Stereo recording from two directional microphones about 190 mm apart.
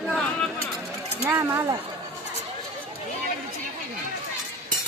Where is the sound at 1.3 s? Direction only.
15° right (ahead or behind).